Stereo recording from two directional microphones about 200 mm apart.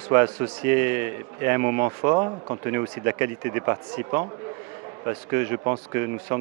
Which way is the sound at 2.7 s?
10° right (ahead or behind).